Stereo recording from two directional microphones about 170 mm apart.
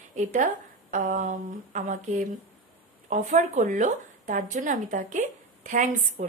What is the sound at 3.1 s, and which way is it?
A woman's voice, 45° right (ahead or behind).